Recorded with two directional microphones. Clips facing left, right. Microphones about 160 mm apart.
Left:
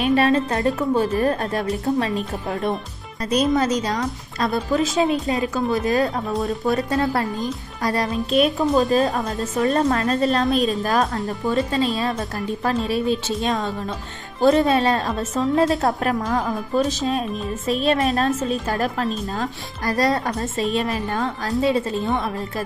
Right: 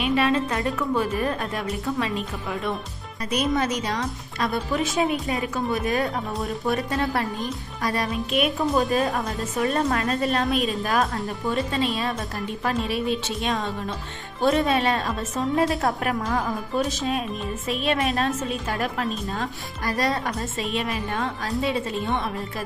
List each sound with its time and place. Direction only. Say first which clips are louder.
0.0 s a woman's voice: left 4 dB; 40° left (ahead or behind); by 5.5 s 20° left (ahead or behind)
5.5 s a woman's voice: left 3 dB; 35° left (ahead or behind)